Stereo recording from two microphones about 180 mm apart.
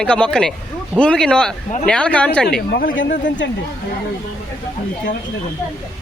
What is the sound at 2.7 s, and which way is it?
Speech, 80° left.